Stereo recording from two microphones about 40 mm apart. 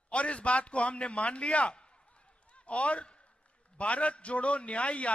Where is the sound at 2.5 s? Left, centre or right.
Left.